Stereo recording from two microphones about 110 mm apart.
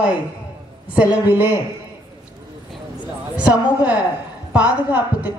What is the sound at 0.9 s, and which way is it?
Speech, 15° right (ahead or behind).